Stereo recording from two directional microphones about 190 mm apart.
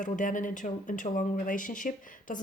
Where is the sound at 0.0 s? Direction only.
45° left (ahead or behind).